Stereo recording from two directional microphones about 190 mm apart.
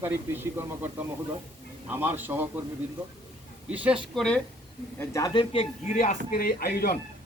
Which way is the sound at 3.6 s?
5° right (ahead or behind).